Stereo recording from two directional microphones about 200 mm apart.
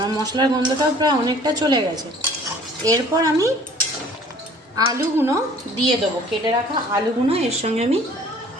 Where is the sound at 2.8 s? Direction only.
15° right (ahead or behind).